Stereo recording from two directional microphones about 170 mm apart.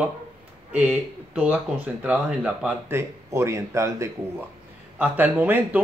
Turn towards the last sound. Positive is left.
turn(degrees=-10)  # may be behind; listen again after turning